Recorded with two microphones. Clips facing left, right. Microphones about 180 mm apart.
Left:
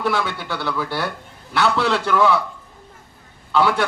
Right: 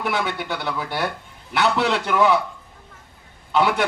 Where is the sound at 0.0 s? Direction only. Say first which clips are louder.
Left 2 dB; 20° right (ahead or behind).